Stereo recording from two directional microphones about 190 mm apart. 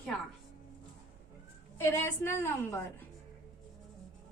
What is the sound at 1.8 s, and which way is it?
A woman's voice, 10° left (ahead or behind).